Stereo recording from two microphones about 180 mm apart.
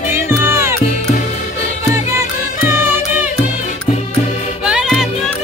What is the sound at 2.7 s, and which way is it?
Music, 10° right (ahead or behind).